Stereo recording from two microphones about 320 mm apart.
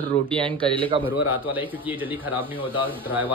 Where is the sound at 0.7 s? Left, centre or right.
Centre.